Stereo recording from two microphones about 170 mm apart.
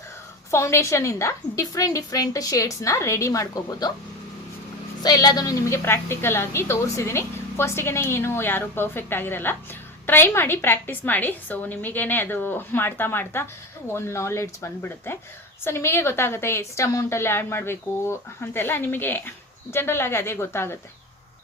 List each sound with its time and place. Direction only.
0.5 s a woman's voice: 15° left (ahead or behind)
5.0 s a woman's voice: 25° left (ahead or behind)